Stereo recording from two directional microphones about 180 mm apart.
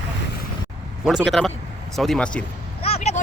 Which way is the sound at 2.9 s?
35° left (ahead or behind).